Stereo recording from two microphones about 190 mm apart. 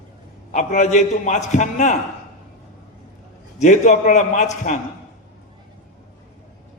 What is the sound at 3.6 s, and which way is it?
Speech, 40° left (ahead or behind).